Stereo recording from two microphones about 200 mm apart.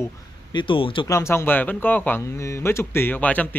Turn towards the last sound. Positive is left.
turn(degrees=10)  # may be behind; listen again after turning